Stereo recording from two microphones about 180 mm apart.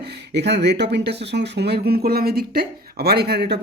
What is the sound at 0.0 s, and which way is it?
Speech, 70° right (ahead or behind).